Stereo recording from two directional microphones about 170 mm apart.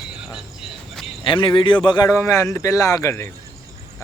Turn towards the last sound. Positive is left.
turn(degrees=15)  # may be behind; listen again after turning